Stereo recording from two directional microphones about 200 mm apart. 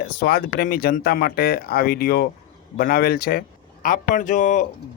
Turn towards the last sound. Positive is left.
turn(degrees=40)  # may be behind; listen again after turning